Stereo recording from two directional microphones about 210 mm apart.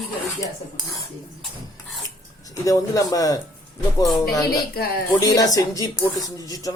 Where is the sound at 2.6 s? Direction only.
15° left (ahead or behind).